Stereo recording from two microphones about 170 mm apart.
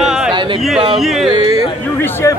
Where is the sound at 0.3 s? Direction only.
30° right (ahead or behind).